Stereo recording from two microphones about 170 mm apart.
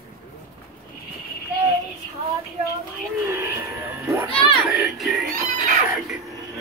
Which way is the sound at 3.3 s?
15° right (ahead or behind).